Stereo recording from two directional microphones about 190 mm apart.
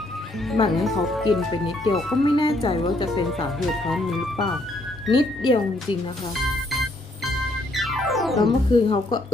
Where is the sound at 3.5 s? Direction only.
Centre (ahead or behind).